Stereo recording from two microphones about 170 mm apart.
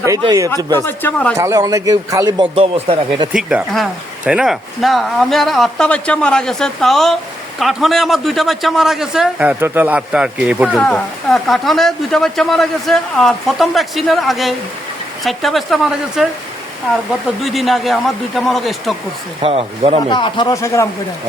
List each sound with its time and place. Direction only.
0.2 s speech: 20° right (ahead or behind)
0.5 s speech: 15° left (ahead or behind)
1.4 s speech: 20° right (ahead or behind)
2.6 s speech: 35° right (ahead or behind)
3.3 s speech: 10° right (ahead or behind)
17.4 s speech: centre (ahead or behind)
19.4 s speech: 35° right (ahead or behind)
20.1 s speech: 25° left (ahead or behind)